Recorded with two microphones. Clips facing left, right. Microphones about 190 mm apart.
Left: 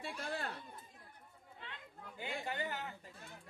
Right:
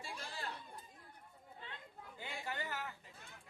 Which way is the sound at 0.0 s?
60° left (ahead or behind).